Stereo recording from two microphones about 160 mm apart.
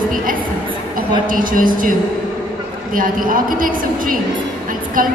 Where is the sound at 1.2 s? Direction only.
60° right (ahead or behind).